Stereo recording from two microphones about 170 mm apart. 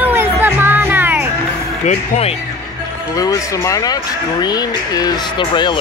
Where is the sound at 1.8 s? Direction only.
40° left (ahead or behind).